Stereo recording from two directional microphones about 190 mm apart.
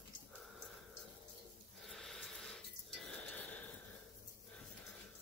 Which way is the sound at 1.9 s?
Centre (ahead or behind).